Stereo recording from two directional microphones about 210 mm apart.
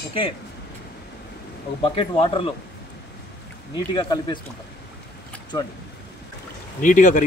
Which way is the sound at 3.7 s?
20° left (ahead or behind).